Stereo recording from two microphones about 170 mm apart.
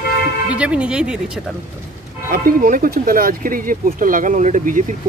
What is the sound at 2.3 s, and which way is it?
Speech, 55° right (ahead or behind).